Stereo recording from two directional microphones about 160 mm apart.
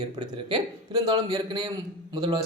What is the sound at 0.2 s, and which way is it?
Speech, 30° right (ahead or behind).